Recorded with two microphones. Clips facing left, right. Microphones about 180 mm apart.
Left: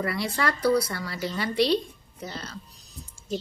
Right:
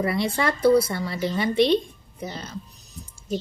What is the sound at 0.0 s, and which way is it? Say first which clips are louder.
Speech: right 4 dB; 20° right (ahead or behind).